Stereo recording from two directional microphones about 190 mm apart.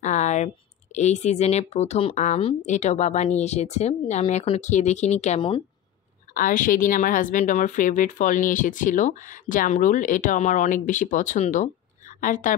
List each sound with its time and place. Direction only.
0.0 s a sound: 40° left (ahead or behind)
0.9 s speech: 35° left (ahead or behind)
6.3 s a woman's voice: 45° left (ahead or behind)